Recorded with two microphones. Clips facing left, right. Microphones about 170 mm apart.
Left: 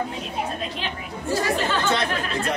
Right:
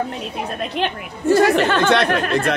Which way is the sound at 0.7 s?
65° right (ahead or behind).